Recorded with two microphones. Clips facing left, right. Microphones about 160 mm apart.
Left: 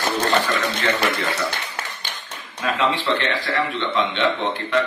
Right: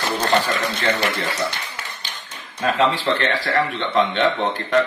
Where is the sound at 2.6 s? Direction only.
40° right (ahead or behind).